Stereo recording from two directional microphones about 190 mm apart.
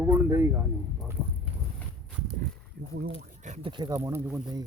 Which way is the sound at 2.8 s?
60° right (ahead or behind).